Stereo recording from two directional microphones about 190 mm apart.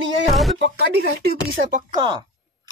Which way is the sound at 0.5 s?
65° right (ahead or behind).